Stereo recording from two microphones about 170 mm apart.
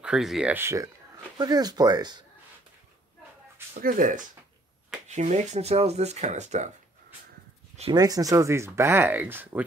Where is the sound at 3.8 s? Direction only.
50° right (ahead or behind).